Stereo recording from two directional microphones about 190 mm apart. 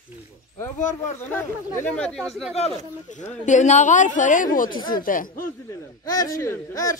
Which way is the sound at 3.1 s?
40° left (ahead or behind).